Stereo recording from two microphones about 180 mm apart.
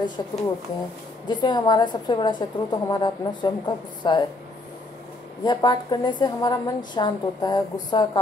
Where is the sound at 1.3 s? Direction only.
25° left (ahead or behind).